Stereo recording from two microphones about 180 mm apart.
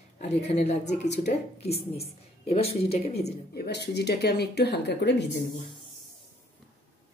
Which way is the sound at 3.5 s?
65° left (ahead or behind).